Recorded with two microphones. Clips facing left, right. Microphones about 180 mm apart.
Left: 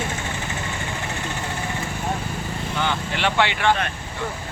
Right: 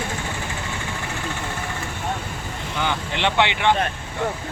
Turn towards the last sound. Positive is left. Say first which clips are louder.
# right 1 dB
turn(degrees=-20)  # may be behind; listen again after turning